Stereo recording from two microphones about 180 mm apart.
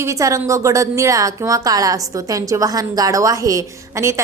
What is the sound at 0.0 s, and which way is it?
A woman's voice, 15° right (ahead or behind).